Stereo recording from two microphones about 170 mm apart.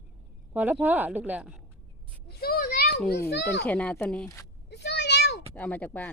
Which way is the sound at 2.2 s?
65° left (ahead or behind).